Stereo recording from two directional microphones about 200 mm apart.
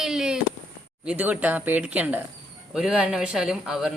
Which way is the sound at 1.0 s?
5° right (ahead or behind).